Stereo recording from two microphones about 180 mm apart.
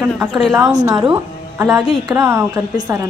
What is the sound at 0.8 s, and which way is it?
Speech, 20° right (ahead or behind).